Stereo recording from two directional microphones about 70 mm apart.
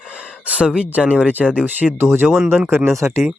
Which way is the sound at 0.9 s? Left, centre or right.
Right.